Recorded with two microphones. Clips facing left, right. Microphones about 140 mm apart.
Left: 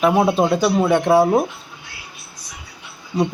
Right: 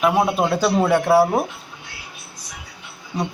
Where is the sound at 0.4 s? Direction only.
15° left (ahead or behind).